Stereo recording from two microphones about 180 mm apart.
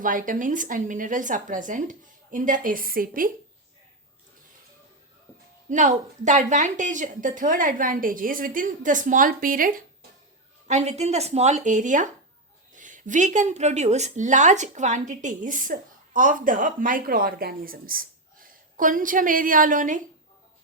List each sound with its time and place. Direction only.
0.0 s a woman's voice: 50° right (ahead or behind)
5.6 s a woman's voice: 45° right (ahead or behind)
10.7 s a woman's voice: 40° right (ahead or behind)